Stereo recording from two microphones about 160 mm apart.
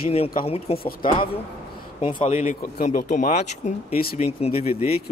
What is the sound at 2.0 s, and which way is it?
A man's voice, 40° left (ahead or behind).